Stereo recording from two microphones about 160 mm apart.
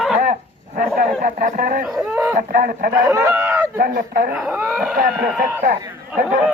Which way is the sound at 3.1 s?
20° right (ahead or behind).